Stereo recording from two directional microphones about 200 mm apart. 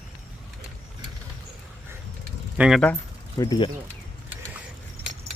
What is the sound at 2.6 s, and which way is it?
Speech, centre (ahead or behind).